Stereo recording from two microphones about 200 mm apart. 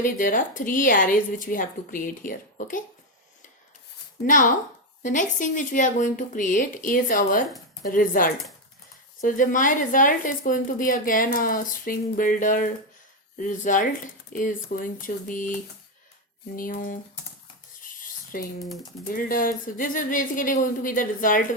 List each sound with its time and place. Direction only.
0.0 s speech: 40° left (ahead or behind)
4.3 s speech: 40° left (ahead or behind)
16.6 s speech: 45° left (ahead or behind)
17.8 s rub: 45° left (ahead or behind)
18.6 s speech: centre (ahead or behind)
19.1 s speech: 45° left (ahead or behind)